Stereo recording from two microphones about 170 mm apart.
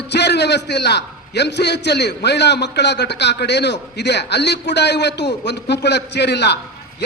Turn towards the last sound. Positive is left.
turn(degrees=80)